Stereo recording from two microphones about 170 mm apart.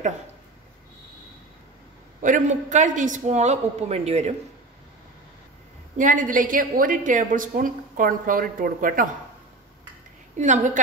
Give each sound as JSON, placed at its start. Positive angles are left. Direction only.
{"t": 2.2, "sound": "a woman's voice", "side_deg": -50}
{"t": 5.9, "sound": "a woman's voice", "side_deg": -50}
{"t": 10.3, "sound": "a woman's voice", "side_deg": -45}